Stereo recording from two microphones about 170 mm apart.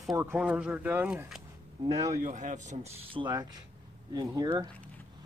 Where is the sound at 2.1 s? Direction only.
50° right (ahead or behind).